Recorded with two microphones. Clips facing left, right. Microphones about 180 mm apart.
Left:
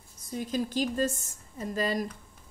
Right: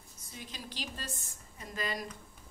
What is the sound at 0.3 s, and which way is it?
A woman's voice, 45° left (ahead or behind).